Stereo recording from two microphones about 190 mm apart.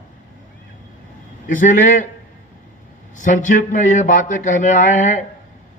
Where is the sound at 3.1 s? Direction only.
40° left (ahead or behind).